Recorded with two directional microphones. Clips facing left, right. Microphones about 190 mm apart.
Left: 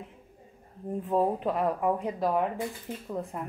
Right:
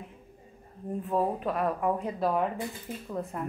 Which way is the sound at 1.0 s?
20° left (ahead or behind).